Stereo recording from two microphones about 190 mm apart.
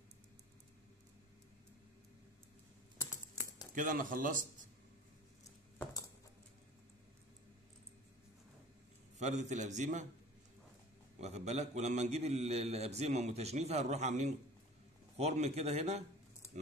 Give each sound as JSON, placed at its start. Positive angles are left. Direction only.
{"t": 3.7, "sound": "speech", "side_deg": -45}
{"t": 9.2, "sound": "a man's voice", "side_deg": -35}
{"t": 11.1, "sound": "a man's voice", "side_deg": -35}